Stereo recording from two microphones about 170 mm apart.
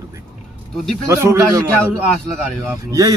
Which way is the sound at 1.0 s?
15° right (ahead or behind).